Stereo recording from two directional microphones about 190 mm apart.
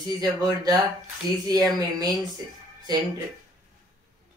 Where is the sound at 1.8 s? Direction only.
20° right (ahead or behind).